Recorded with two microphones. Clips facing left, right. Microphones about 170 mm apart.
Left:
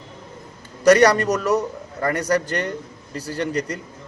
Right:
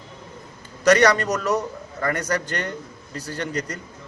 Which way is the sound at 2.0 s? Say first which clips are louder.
Left 4 dB; 35° left (ahead or behind).